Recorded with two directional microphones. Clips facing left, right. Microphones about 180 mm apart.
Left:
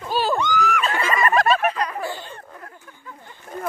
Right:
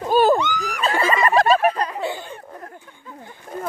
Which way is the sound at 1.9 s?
20° right (ahead or behind).